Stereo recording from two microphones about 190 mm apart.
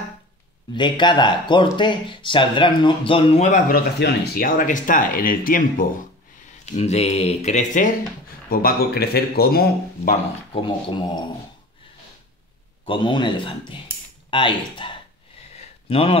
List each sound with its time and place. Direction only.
0.7 s speech: 25° left (ahead or behind); by 3.8 s 40° left (ahead or behind)
4.0 s speech: 55° left (ahead or behind)
6.6 s speech: 35° left (ahead or behind)
8.5 s speech: 50° left (ahead or behind)
10.5 s speech: 25° left (ahead or behind)
12.8 s speech: 25° left (ahead or behind)
15.9 s speech: 30° left (ahead or behind)